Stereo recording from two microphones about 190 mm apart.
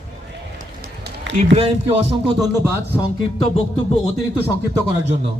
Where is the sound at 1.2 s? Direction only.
70° right (ahead or behind).